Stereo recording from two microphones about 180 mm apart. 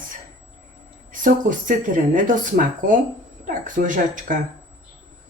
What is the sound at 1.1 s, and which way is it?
Speech, 45° right (ahead or behind).